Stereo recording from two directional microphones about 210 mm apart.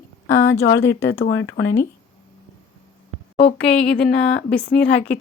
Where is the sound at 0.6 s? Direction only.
55° left (ahead or behind).